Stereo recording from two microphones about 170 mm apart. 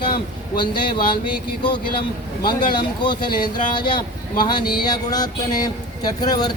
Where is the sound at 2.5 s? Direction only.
25° left (ahead or behind).